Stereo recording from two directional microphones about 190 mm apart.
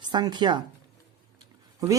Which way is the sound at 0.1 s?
25° right (ahead or behind).